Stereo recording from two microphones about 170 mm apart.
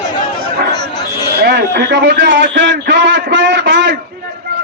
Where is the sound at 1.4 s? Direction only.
70° right (ahead or behind); by 3.9 s 90° right.